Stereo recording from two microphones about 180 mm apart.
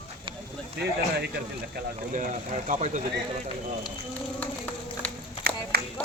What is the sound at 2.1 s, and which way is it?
Speech, 45° right (ahead or behind).